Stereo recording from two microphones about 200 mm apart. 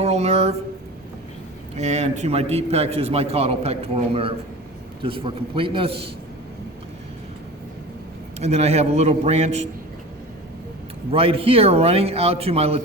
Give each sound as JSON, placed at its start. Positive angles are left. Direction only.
{"t": 0.0, "sound": "speech", "side_deg": -30}
{"t": 1.7, "sound": "a man's voice", "side_deg": -35}
{"t": 8.4, "sound": "a man's voice", "side_deg": -30}
{"t": 11.1, "sound": "speech", "side_deg": -30}